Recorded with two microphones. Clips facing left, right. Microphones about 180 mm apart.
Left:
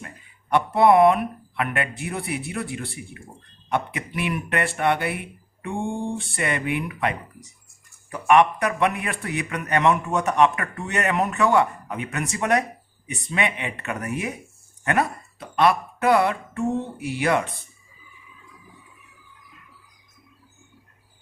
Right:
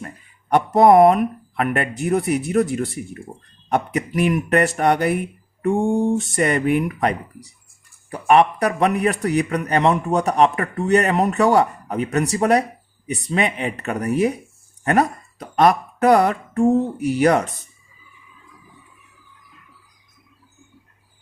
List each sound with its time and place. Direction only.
0.5 s a man's voice: 40° right (ahead or behind)